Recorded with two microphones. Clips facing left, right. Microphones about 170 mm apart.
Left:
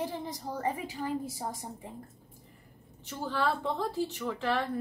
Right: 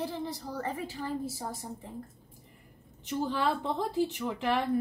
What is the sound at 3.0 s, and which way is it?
A woman's voice, 15° right (ahead or behind).